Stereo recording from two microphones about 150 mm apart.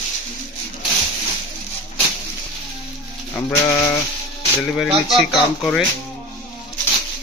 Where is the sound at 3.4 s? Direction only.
20° left (ahead or behind).